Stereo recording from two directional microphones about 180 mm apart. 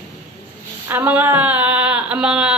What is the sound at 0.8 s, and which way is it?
Speech, 10° right (ahead or behind).